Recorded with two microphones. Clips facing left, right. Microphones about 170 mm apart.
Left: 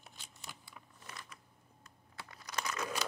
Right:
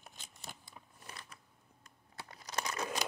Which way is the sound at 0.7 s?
30° right (ahead or behind).